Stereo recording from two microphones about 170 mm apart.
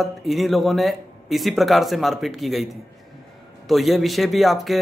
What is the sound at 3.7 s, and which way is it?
Speech, centre (ahead or behind).